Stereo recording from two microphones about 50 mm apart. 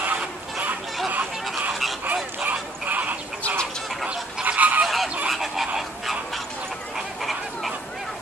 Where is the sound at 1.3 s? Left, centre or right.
Centre.